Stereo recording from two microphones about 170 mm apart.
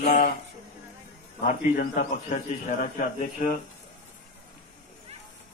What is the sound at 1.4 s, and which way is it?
A man's voice, 50° left (ahead or behind).